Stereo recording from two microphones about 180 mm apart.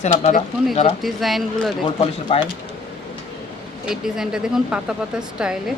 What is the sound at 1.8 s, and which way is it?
Speech, 30° left (ahead or behind).